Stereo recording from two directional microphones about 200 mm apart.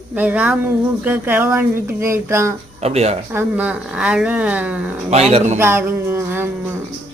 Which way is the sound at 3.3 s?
5° right (ahead or behind).